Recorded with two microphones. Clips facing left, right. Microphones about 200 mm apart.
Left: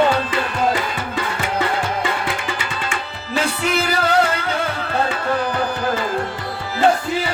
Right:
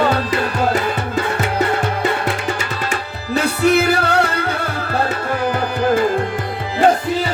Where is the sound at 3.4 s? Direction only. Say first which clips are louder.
Right 7 dB; 60° right (ahead or behind).